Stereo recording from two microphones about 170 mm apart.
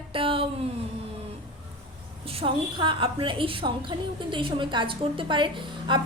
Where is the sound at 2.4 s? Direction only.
30° right (ahead or behind).